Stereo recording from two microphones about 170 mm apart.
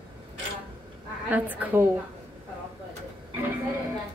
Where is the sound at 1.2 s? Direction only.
10° right (ahead or behind).